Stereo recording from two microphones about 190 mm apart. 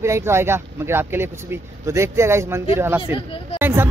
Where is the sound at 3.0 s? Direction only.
30° left (ahead or behind).